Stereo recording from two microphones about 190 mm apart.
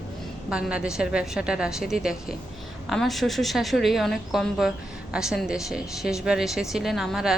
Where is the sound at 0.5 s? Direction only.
5° right (ahead or behind).